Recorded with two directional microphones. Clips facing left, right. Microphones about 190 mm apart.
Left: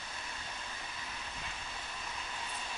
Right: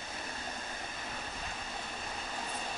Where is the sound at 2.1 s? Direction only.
45° right (ahead or behind).